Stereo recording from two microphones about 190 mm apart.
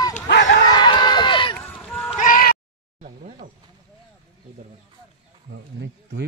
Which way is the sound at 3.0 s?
40° right (ahead or behind).